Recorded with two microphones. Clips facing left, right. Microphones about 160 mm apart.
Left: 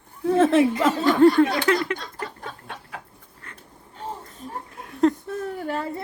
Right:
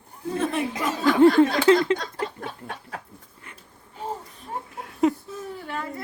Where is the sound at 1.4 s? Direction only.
25° right (ahead or behind).